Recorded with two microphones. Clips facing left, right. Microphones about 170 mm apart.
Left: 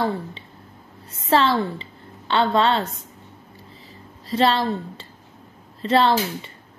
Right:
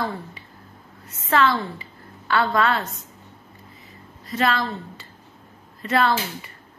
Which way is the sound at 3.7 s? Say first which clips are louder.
Left 2 dB; 30° left (ahead or behind).